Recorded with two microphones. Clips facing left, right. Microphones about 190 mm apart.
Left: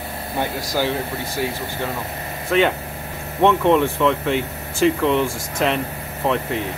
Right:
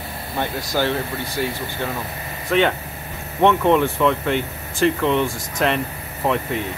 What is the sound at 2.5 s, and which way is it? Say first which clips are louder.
Speech: even; centre (ahead or behind).